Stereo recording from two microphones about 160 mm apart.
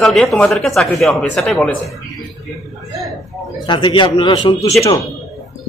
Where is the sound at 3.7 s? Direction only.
30° left (ahead or behind).